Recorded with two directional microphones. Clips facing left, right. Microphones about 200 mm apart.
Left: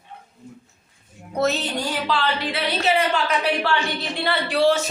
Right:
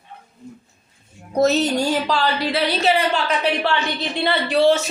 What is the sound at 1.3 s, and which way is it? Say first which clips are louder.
Speech: right 6 dB; 40° right (ahead or behind).